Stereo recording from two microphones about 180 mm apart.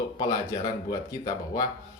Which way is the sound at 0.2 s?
20° left (ahead or behind).